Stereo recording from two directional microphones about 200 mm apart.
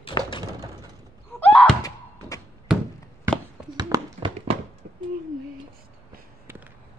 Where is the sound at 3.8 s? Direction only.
20° right (ahead or behind).